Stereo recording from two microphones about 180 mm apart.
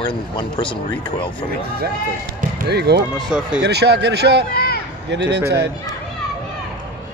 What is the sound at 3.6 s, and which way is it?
Speech, 65° right (ahead or behind).